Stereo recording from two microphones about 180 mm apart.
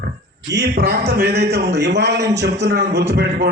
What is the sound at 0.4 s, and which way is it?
A man's voice, 65° right (ahead or behind).